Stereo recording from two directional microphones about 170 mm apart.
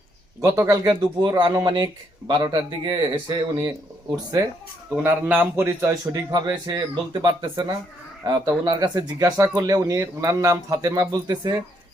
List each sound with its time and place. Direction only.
0.5 s speech: 15° right (ahead or behind)
5.0 s speech: 10° right (ahead or behind)